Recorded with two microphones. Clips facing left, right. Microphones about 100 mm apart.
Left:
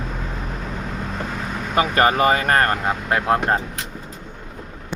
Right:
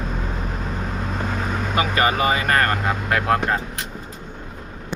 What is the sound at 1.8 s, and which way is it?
Speech, 45° left (ahead or behind).